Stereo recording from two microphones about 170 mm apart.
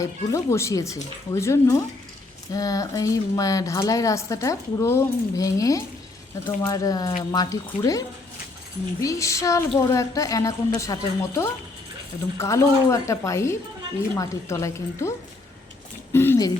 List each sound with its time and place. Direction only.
0.0 s speech: 20° left (ahead or behind)
16.1 s speech: 15° left (ahead or behind)